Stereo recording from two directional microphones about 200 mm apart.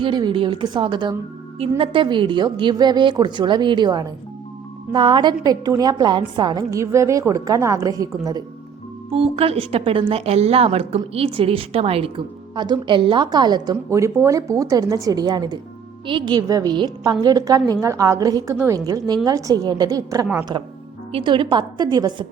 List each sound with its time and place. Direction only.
0.0 s a woman's voice: 20° right (ahead or behind)
9.1 s a woman's voice: 30° right (ahead or behind)